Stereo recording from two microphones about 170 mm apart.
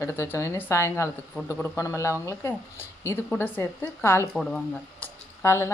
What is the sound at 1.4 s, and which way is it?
Speech, 10° right (ahead or behind).